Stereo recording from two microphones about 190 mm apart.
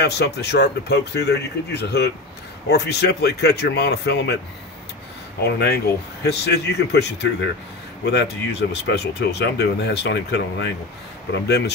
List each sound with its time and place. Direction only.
0.0 s speech: 60° left (ahead or behind)
6.2 s speech: 60° left (ahead or behind)